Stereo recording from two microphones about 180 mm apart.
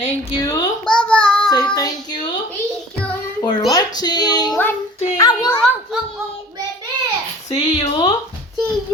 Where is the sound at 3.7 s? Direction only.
20° left (ahead or behind).